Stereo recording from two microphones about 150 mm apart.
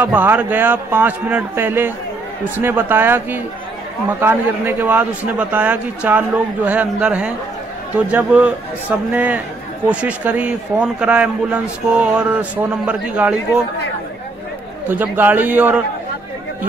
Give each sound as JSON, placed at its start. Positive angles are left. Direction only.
{"t": 0.0, "sound": "a man's voice", "side_deg": -10}
{"t": 14.9, "sound": "a man's voice", "side_deg": -10}